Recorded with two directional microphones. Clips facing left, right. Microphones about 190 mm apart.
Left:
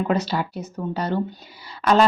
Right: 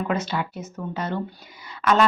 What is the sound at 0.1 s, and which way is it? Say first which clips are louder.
Speech: left 3 dB; 35° left (ahead or behind).